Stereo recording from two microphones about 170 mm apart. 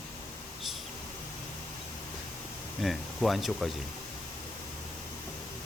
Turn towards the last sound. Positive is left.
turn(degrees=0)  # may be behind; listen again after turning